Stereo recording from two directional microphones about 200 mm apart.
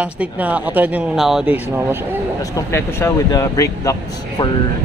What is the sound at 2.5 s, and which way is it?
Speech, 15° left (ahead or behind).